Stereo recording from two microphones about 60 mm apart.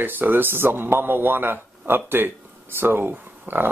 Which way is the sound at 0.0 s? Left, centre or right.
Right.